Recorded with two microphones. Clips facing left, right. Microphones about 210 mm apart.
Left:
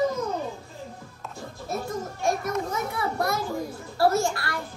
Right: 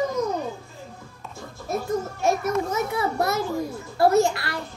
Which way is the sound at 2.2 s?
25° right (ahead or behind).